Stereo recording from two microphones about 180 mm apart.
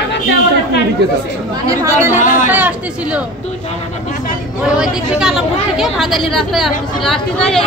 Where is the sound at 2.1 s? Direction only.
45° left (ahead or behind).